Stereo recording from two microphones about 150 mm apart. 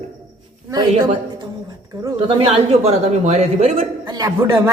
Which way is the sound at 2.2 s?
40° right (ahead or behind).